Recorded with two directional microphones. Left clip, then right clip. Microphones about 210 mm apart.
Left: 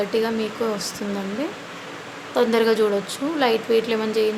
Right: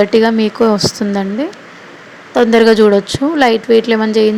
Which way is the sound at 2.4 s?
30° right (ahead or behind).